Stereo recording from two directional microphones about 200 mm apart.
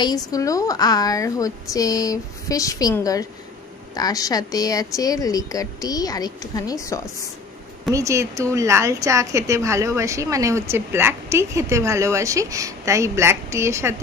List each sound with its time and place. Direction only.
0.0 s a woman's voice: 20° left (ahead or behind)
7.9 s a woman's voice: 15° right (ahead or behind)